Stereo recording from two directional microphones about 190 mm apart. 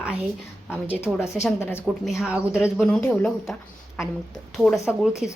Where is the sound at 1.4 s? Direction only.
15° left (ahead or behind).